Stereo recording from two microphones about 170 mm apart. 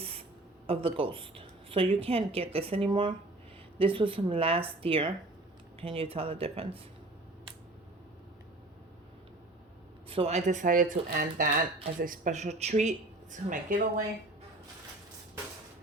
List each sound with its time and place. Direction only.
0.0 s a sound: 35° right (ahead or behind)
0.7 s speech: 30° right (ahead or behind)
10.1 s speech: 35° right (ahead or behind)